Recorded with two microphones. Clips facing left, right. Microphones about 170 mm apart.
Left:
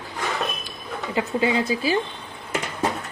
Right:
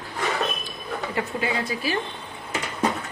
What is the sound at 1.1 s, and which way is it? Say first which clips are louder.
Speech: left 6 dB; 25° left (ahead or behind).